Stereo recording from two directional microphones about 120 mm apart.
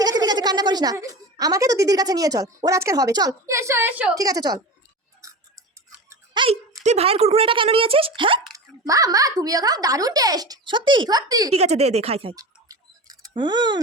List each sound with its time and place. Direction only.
0.0 s a sound: 35° right (ahead or behind)
0.9 s speech: 30° right (ahead or behind)
4.1 s speech: 30° right (ahead or behind)
5.2 s a sound: 25° right (ahead or behind)
6.3 s a sound: 45° right (ahead or behind)
6.8 s speech: 60° right (ahead or behind)
8.5 s speech: 30° right (ahead or behind)
11.5 s speech: 60° right (ahead or behind)
12.4 s rodents: 30° right (ahead or behind)
13.3 s speech: 40° right (ahead or behind)